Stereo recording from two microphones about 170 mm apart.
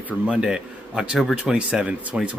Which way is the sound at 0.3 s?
5° right (ahead or behind).